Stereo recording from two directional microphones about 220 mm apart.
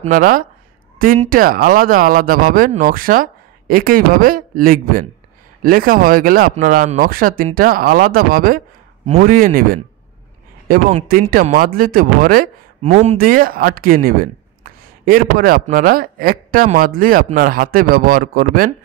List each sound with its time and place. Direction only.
0.0 s speech: 40° right (ahead or behind)
10.9 s speech: 35° right (ahead or behind)